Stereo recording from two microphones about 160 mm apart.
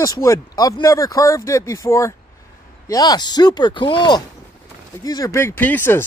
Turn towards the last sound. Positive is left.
turn(degrees=15)  # may be behind; listen again after turning